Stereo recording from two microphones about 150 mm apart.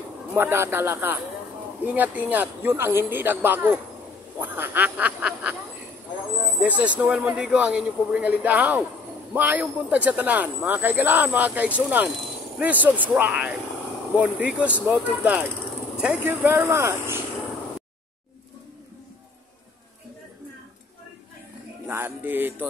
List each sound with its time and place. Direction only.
0.3 s speech: 15° right (ahead or behind)
6.6 s speech: 10° right (ahead or behind)
21.8 s speech: 15° right (ahead or behind)